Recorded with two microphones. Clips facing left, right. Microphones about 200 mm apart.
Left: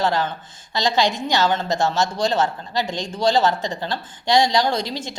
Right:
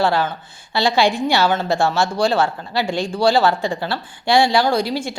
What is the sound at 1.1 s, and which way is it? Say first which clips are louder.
Speech: right 3 dB; 20° left (ahead or behind).